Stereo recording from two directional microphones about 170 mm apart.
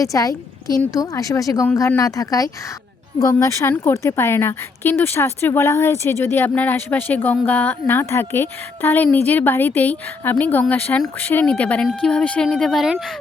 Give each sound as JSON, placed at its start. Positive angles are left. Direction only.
{"t": 0.0, "sound": "a woman's voice", "side_deg": 20}